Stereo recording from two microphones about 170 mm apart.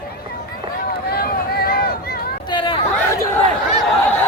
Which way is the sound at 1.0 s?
65° left (ahead or behind).